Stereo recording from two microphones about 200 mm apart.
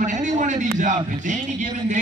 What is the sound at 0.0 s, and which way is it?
A man's voice, 40° right (ahead or behind).